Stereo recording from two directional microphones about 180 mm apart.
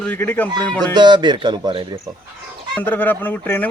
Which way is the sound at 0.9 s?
25° right (ahead or behind).